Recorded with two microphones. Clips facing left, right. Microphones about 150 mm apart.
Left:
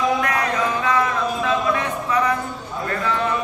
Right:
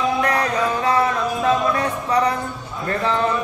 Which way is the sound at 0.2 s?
35° right (ahead or behind).